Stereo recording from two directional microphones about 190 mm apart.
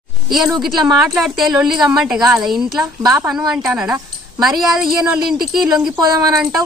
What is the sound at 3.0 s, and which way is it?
Speech, 20° right (ahead or behind).